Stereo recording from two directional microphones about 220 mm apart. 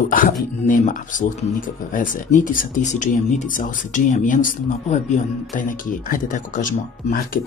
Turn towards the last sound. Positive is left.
turn(degrees=40)  # may be behind; listen again after turning